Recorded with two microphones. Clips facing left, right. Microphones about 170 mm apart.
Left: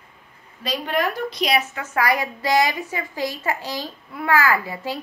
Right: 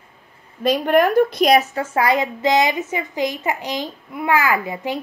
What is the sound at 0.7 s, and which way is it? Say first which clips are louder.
A woman's voice: right 8 dB; 50° right (ahead or behind).